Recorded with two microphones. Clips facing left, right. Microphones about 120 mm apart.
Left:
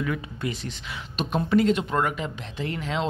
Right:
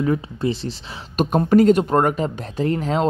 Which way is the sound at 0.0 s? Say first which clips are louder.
Right 8 dB; 30° right (ahead or behind).